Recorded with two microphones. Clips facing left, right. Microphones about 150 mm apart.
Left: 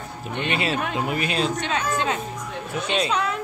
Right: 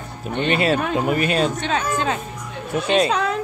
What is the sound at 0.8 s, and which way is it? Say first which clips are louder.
Speech: right 5 dB; 45° right (ahead or behind).